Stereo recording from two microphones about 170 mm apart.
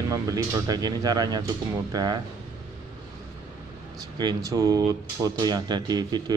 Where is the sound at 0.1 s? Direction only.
20° right (ahead or behind).